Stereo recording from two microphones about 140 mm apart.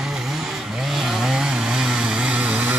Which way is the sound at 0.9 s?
Centre (ahead or behind).